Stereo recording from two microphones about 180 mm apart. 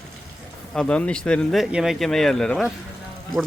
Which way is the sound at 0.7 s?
5° left (ahead or behind).